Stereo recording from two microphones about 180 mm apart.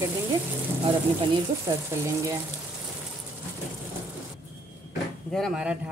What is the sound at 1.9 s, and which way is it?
Speech, 15° right (ahead or behind).